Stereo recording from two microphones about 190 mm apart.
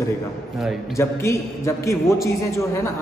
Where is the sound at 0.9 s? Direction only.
15° left (ahead or behind).